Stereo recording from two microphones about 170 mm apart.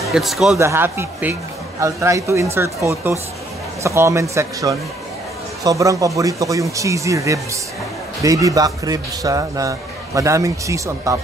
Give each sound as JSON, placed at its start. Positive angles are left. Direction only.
{"t": 0.0, "sound": "speech", "side_deg": 0}
{"t": 0.6, "sound": "a man's voice", "side_deg": -15}